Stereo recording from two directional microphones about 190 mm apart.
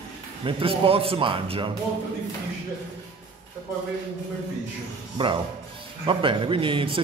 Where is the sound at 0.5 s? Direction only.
30° right (ahead or behind).